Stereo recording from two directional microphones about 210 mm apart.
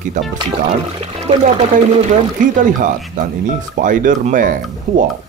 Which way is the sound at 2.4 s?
35° right (ahead or behind).